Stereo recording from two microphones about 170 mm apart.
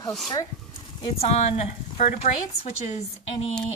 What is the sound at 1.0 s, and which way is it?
A woman's voice, 40° left (ahead or behind).